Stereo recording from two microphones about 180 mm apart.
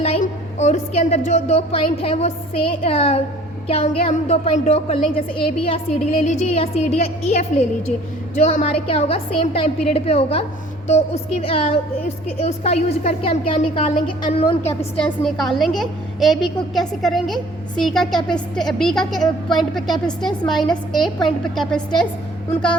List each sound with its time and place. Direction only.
0.0 s a woman's voice: 40° left (ahead or behind)
13.9 s a woman's voice: 50° left (ahead or behind)
14.3 s a woman's voice: 35° left (ahead or behind)
14.9 s a woman's voice: 5° left (ahead or behind)